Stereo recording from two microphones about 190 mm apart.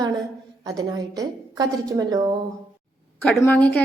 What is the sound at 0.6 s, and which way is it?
A woman's voice, 20° right (ahead or behind).